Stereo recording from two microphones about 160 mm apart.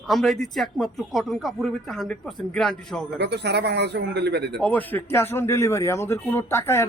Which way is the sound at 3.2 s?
90° right.